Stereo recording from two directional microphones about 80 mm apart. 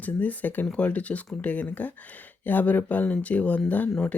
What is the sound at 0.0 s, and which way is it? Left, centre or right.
Speech, centre.